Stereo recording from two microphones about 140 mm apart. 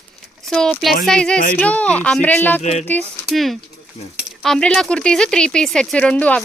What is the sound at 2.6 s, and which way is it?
Speech, 50° left (ahead or behind).